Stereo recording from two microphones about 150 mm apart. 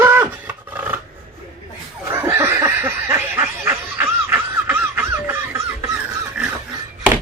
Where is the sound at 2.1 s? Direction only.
15° right (ahead or behind).